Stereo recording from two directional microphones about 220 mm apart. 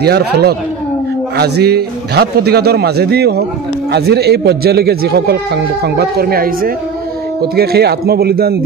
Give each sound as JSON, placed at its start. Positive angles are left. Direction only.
{"t": 0.0, "sound": "speech", "side_deg": -45}